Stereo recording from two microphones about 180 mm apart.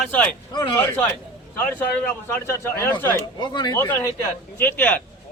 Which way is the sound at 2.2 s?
10° left (ahead or behind).